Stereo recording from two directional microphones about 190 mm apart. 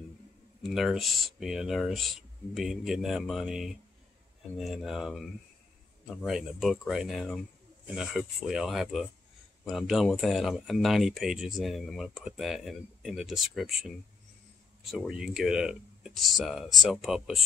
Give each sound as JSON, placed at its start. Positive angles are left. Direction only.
{"t": 0.6, "sound": "speech", "side_deg": 0}